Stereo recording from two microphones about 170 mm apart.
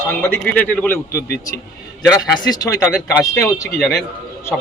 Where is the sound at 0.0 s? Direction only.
10° left (ahead or behind).